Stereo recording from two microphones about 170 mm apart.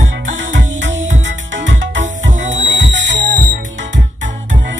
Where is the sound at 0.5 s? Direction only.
90° right.